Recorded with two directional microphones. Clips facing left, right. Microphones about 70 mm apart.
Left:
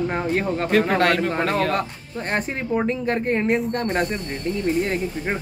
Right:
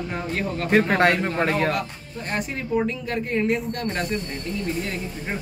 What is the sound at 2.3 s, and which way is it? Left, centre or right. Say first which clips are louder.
Speech: left 1 dB; left.